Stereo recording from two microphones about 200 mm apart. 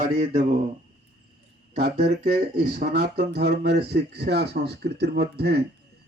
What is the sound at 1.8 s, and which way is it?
Speech, 55° right (ahead or behind).